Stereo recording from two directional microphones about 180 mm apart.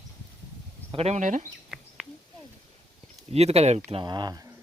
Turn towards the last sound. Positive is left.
turn(degrees=-20)  # may be behind; listen again after turning